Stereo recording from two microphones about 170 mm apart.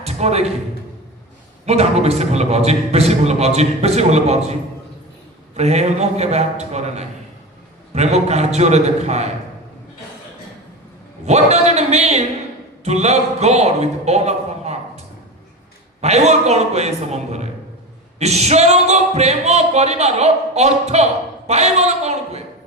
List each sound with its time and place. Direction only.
0.0 s a sound: 40° right (ahead or behind)
1.6 s speech: 40° right (ahead or behind)
5.5 s speech: 40° right (ahead or behind)
11.3 s a man's voice: 40° right (ahead or behind)